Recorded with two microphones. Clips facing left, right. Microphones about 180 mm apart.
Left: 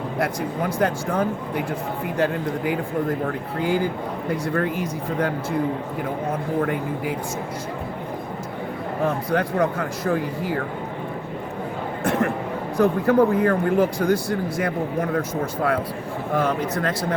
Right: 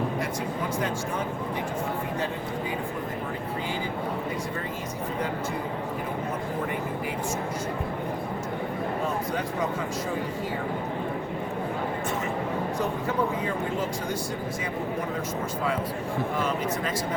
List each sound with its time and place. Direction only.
0.2 s speech: 65° left (ahead or behind)
2.1 s speech: 90° left
4.3 s speech: 70° left (ahead or behind)
9.0 s speech: 65° left (ahead or behind)
12.8 s speech: 65° left (ahead or behind)
16.3 s speech: 65° left (ahead or behind)